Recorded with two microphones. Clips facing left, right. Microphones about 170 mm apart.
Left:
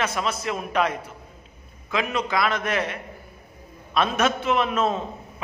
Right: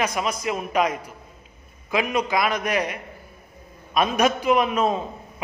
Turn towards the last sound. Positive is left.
turn(degrees=-10)  # may be behind; listen again after turning